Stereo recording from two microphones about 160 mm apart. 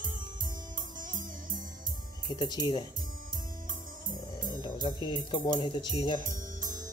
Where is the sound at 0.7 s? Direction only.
55° right (ahead or behind).